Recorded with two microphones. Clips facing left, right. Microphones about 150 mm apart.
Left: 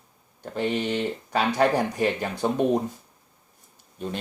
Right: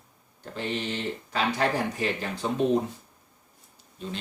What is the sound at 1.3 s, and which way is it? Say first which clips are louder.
Speech: left 4 dB; 55° left (ahead or behind).